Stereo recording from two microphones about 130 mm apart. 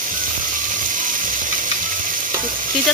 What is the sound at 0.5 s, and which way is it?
Frying, 90° right.